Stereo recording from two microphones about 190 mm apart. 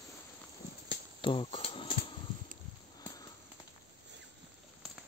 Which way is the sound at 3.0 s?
20° left (ahead or behind).